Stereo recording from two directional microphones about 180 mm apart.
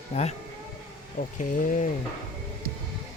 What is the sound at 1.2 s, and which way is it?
Speech, 50° left (ahead or behind).